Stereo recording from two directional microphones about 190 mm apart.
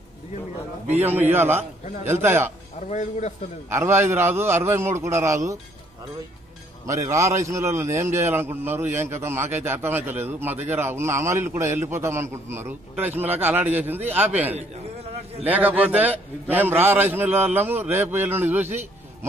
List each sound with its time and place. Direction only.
1.3 s a man's voice: 10° right (ahead or behind)
2.9 s a man's voice: 40° left (ahead or behind)
3.7 s a man's voice: 15° right (ahead or behind)
6.9 s a man's voice: 15° right (ahead or behind)